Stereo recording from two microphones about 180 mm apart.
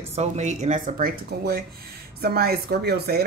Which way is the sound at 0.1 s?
40° right (ahead or behind).